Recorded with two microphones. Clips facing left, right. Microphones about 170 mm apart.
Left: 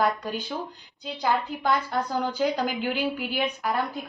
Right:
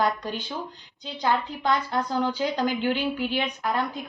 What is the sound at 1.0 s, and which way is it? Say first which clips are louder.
A woman's voice: even; 5° left (ahead or behind).